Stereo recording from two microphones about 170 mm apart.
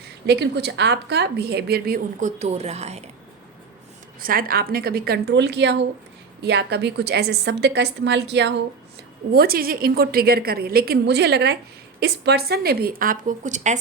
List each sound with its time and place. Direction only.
0.3 s a woman's voice: 80° right
2.2 s speech: 40° right (ahead or behind)
4.2 s a woman's voice: 60° right (ahead or behind); by 5.8 s 90° right
6.4 s a woman's voice: 75° right (ahead or behind)
9.3 s a woman's voice: 65° right (ahead or behind); by 13.7 s 45° right (ahead or behind)